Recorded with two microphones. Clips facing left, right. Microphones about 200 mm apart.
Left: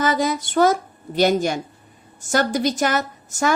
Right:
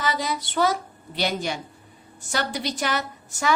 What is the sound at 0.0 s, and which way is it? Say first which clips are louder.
A woman's voice: left 6 dB; 50° left (ahead or behind).